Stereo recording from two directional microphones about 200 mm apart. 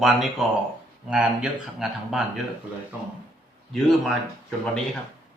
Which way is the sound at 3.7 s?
Centre (ahead or behind).